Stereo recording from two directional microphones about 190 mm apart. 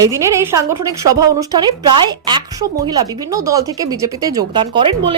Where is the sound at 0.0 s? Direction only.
15° right (ahead or behind).